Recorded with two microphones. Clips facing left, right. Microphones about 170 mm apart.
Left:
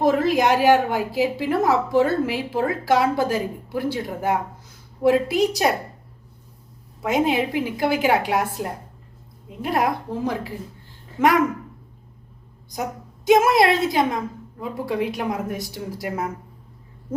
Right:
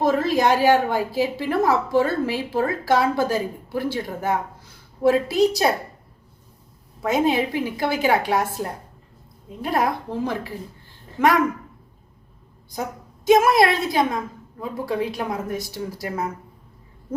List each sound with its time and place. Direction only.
0.0 s a woman's voice: 15° left (ahead or behind)
7.0 s a woman's voice: 15° left (ahead or behind)
13.2 s a woman's voice: 20° left (ahead or behind)